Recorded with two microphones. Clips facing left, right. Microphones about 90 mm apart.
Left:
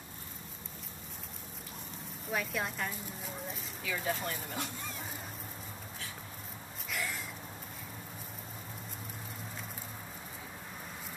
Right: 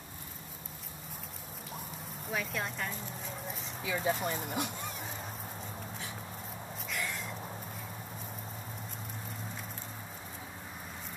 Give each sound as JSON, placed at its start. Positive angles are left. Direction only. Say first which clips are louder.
{"t": 2.2, "sound": "speech", "louder": "left 1 dB", "side_deg": 0}
{"t": 3.8, "sound": "speech", "louder": "right 3 dB", "side_deg": -15}
{"t": 6.9, "sound": "a sound", "louder": "even", "side_deg": 0}